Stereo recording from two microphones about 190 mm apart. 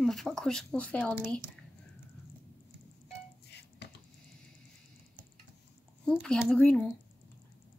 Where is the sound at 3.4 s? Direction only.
60° left (ahead or behind).